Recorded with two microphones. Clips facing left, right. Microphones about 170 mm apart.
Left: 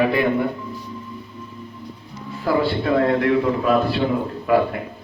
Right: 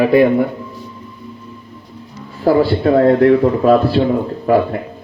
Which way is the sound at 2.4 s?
40° right (ahead or behind).